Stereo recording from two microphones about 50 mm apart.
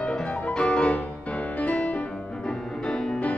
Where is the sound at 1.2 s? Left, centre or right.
Left.